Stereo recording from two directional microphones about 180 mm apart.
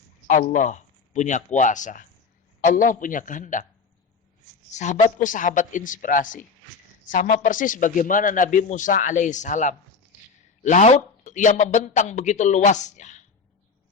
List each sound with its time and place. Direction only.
0.3 s a man's voice: 45° left (ahead or behind)
4.7 s a woman's voice: 40° left (ahead or behind)